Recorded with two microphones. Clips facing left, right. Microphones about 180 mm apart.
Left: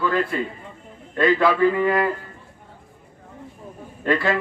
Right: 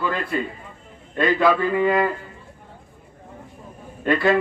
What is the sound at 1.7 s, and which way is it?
Speech, 15° right (ahead or behind).